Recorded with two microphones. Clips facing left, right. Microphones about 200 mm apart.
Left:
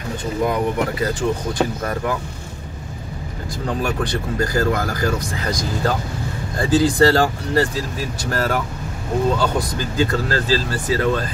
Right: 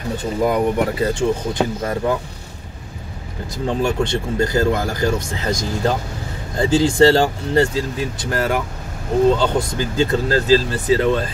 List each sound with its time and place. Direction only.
0.5 s speech: 25° right (ahead or behind)
3.6 s speech: 25° right (ahead or behind)